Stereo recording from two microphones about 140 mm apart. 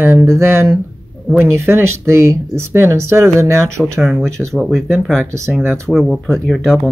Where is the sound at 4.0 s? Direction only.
Centre (ahead or behind).